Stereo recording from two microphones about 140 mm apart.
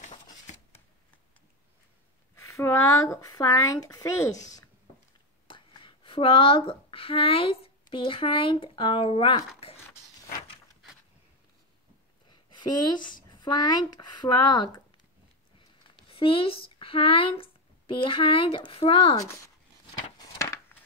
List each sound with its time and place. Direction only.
2.3 s speech: 20° left (ahead or behind)
5.5 s speech: 35° left (ahead or behind)
12.3 s speech: 30° left (ahead or behind)
16.1 s speech: 40° left (ahead or behind)
20.2 s a sound: 20° left (ahead or behind)